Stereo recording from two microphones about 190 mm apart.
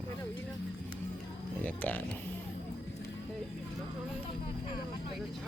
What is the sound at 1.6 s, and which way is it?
Speech, 10° left (ahead or behind).